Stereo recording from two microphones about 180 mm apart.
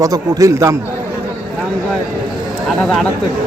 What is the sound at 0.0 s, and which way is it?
Speech, 20° right (ahead or behind).